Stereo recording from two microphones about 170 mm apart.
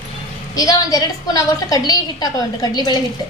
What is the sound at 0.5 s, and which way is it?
A woman's voice, 20° left (ahead or behind).